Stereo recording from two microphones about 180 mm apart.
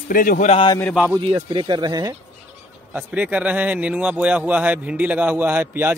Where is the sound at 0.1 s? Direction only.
50° left (ahead or behind).